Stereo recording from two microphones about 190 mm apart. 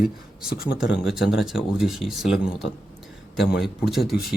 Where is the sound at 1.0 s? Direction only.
Centre (ahead or behind).